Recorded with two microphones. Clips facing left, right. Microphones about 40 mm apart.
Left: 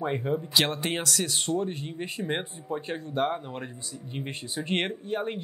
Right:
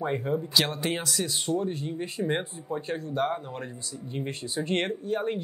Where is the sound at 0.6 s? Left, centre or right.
Left.